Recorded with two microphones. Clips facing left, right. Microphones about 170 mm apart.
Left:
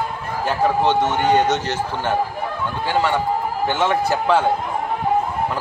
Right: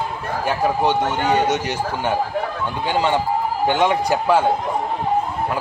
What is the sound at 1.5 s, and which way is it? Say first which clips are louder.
A man's voice: even; 10° right (ahead or behind).